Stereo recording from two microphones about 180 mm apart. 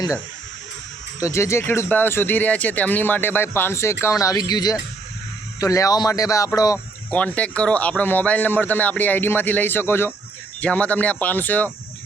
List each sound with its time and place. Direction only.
1.2 s speech: 15° left (ahead or behind)
7.1 s speech: 10° left (ahead or behind)